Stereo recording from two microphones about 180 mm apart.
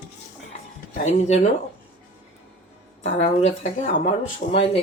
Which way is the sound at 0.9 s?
40° left (ahead or behind).